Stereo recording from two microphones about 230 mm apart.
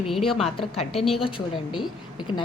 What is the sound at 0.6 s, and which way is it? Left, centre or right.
A woman's voice, left.